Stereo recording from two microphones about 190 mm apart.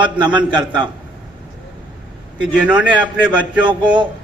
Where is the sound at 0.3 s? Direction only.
25° right (ahead or behind).